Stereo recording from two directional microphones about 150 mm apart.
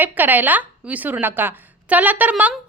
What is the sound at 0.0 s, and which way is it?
A woman's voice, 10° right (ahead or behind).